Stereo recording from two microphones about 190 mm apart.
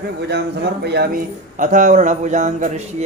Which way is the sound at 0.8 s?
60° right (ahead or behind).